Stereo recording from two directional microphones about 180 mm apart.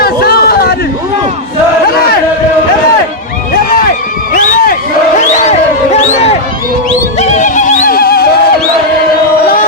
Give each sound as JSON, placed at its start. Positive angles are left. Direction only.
{"t": 0.0, "sound": "a sound", "side_deg": 60}
{"t": 4.4, "sound": "crowd", "side_deg": 50}
{"t": 5.2, "sound": "music", "side_deg": 40}
{"t": 7.2, "sound": "neigh", "side_deg": 40}